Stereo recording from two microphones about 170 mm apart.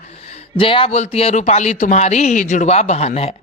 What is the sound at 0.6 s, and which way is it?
A woman's voice, 30° left (ahead or behind).